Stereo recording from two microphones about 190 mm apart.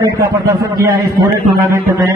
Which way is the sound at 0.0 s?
15° right (ahead or behind).